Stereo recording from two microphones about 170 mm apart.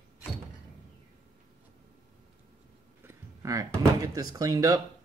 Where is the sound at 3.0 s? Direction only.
15° right (ahead or behind).